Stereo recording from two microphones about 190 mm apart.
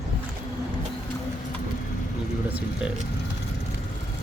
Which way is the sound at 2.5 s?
5° right (ahead or behind).